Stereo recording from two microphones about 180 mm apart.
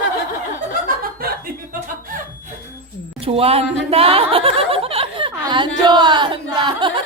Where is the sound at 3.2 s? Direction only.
30° right (ahead or behind).